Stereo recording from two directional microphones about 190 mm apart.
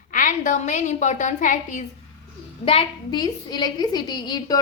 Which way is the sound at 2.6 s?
25° left (ahead or behind).